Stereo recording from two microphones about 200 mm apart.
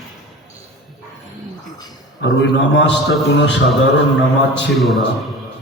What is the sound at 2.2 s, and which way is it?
A man's voice, 60° left (ahead or behind).